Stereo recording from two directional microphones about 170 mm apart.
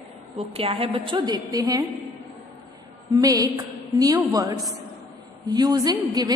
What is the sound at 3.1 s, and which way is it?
A woman's voice, 20° right (ahead or behind).